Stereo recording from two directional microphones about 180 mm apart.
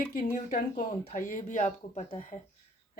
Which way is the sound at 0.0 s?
50° left (ahead or behind).